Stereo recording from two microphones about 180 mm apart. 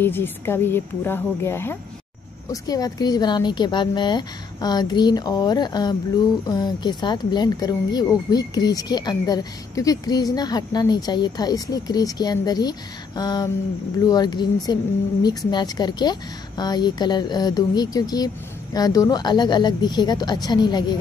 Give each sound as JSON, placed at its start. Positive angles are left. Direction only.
{"t": 0.0, "sound": "speech", "side_deg": 10}